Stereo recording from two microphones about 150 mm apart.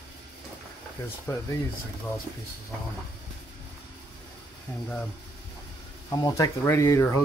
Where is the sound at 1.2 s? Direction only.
15° left (ahead or behind).